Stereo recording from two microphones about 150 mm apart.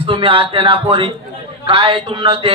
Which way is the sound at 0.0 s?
35° right (ahead or behind).